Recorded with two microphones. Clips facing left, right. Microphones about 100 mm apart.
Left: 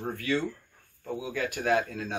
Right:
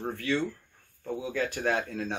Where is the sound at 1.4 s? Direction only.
30° right (ahead or behind).